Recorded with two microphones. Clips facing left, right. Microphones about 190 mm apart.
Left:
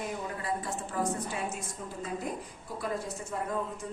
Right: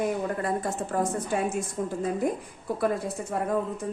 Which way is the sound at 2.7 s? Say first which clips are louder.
Right 11 dB; 60° right (ahead or behind).